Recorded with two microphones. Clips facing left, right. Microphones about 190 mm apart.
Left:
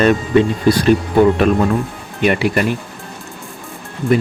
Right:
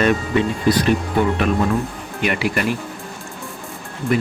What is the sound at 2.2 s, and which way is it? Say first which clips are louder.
Speech: left 6 dB; 30° left (ahead or behind).